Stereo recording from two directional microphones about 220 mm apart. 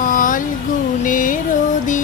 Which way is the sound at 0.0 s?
35° left (ahead or behind).